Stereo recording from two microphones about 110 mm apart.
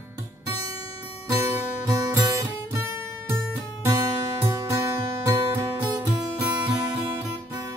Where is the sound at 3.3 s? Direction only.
25° right (ahead or behind).